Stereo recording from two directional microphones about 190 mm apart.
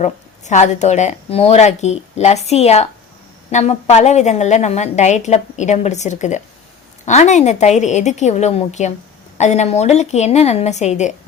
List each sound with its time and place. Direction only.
0.0 s a woman's voice: 40° left (ahead or behind)